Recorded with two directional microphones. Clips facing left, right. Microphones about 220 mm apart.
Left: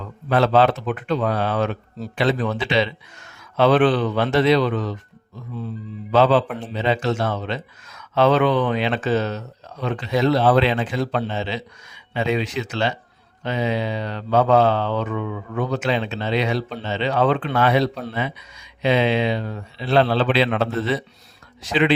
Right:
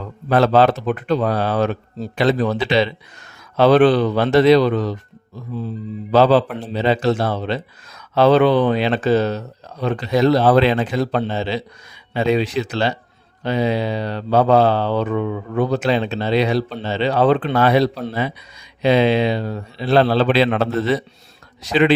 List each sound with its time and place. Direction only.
0.3 s mantra: 40° right (ahead or behind)
6.1 s mantra: 35° right (ahead or behind)